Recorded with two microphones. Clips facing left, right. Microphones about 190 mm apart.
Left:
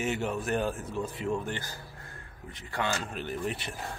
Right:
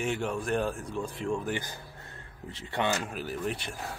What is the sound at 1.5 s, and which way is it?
Speech, 20° right (ahead or behind).